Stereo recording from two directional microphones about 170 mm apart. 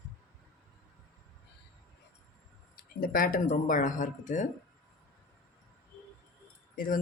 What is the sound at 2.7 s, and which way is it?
Speech, 55° left (ahead or behind).